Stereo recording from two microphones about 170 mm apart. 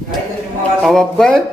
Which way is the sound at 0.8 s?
Centre (ahead or behind).